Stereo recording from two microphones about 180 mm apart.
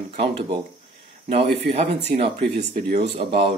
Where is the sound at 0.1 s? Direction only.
30° right (ahead or behind).